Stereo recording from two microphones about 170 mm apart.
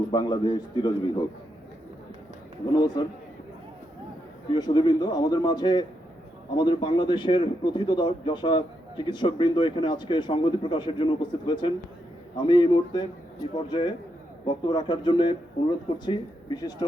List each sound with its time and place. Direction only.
0.1 s speech: 25° left (ahead or behind)
2.7 s speech: 25° left (ahead or behind)
4.5 s speech: 25° left (ahead or behind)